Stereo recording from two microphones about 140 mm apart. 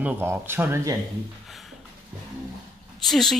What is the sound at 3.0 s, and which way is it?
Speech, centre (ahead or behind).